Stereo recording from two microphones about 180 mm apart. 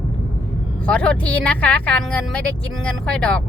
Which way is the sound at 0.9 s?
5° left (ahead or behind).